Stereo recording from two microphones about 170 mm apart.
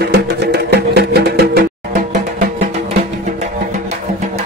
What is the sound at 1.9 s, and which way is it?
Music, 50° right (ahead or behind).